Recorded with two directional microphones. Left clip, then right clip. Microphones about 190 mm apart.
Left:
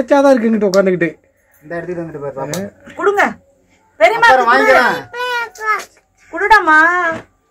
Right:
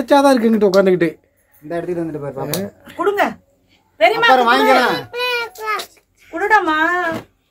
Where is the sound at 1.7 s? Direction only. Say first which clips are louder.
Right 1 dB; 60° right (ahead or behind).